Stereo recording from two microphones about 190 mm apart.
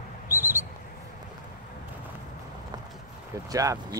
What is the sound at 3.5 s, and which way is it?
Speech, 20° right (ahead or behind).